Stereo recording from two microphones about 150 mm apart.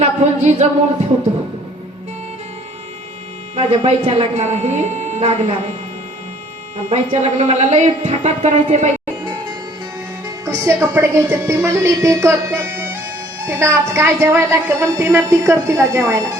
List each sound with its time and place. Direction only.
0.0 s a woman's voice: 45° right (ahead or behind)
3.5 s a woman's voice: 40° right (ahead or behind)
6.9 s a woman's voice: 50° right (ahead or behind)
10.4 s a woman's voice: 15° right (ahead or behind)